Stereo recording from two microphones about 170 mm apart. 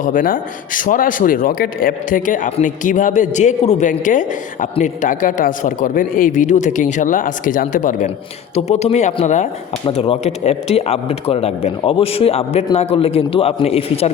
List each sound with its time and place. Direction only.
0.0 s speech: 55° left (ahead or behind)
9.8 s speech: 30° left (ahead or behind)